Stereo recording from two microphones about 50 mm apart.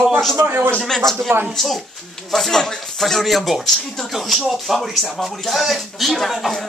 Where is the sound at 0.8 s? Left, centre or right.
Centre.